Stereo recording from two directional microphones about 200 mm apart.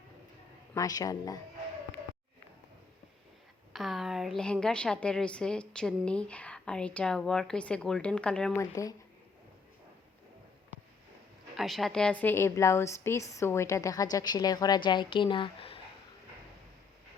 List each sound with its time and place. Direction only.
0.7 s a woman's voice: 20° left (ahead or behind)
3.7 s a woman's voice: centre (ahead or behind)
8.5 s a woman's voice: 15° left (ahead or behind)
11.5 s a woman's voice: centre (ahead or behind); by 15.8 s 25° left (ahead or behind)